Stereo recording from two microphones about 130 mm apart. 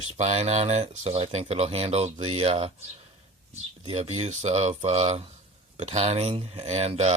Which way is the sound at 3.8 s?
50° right (ahead or behind).